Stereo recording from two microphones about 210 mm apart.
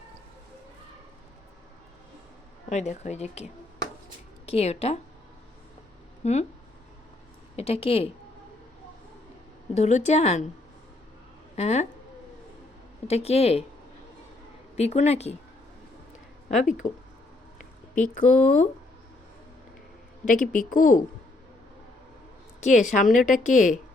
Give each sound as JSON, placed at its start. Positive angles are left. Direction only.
{"t": 2.6, "sound": "a woman's voice", "side_deg": 35}
{"t": 6.2, "sound": "a woman's voice", "side_deg": 30}
{"t": 7.5, "sound": "speech", "side_deg": 30}
{"t": 9.7, "sound": "a woman's voice", "side_deg": 30}
{"t": 11.5, "sound": "a woman's voice", "side_deg": 30}
{"t": 13.1, "sound": "speech", "side_deg": 30}
{"t": 14.8, "sound": "a woman's voice", "side_deg": 30}
{"t": 16.6, "sound": "a woman's voice", "side_deg": 35}
{"t": 18.1, "sound": "a woman's voice", "side_deg": 40}
{"t": 20.2, "sound": "a woman's voice", "side_deg": 40}
{"t": 22.6, "sound": "a woman's voice", "side_deg": 35}